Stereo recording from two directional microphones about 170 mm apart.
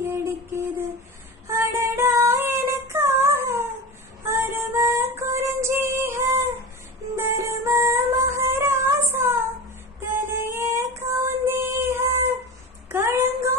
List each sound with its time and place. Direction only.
0.0 s a sound: 15° right (ahead or behind)
1.5 s female singing: 15° right (ahead or behind)
4.3 s music: 15° right (ahead or behind)
8.4 s child singing: 15° right (ahead or behind)
9.9 s female singing: 15° right (ahead or behind)
12.9 s child singing: 15° right (ahead or behind)